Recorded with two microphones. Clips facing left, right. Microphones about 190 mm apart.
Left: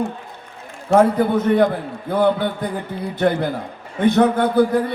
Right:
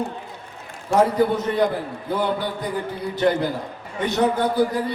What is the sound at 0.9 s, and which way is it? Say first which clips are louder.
A man's voice: left 3 dB; 55° left (ahead or behind).